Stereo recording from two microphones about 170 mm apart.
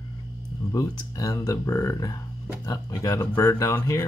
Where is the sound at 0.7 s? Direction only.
20° left (ahead or behind).